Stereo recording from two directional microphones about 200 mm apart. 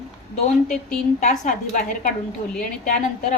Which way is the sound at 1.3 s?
40° left (ahead or behind).